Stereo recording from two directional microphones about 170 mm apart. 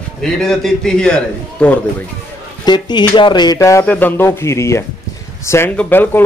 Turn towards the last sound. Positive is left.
turn(degrees=10)  # may be behind; listen again after turning